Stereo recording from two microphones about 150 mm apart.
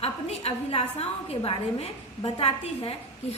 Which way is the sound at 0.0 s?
40° left (ahead or behind).